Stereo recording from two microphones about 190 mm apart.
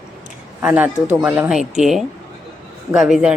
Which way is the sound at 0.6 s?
10° right (ahead or behind).